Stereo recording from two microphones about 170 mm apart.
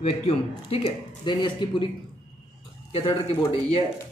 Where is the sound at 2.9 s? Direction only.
35° left (ahead or behind).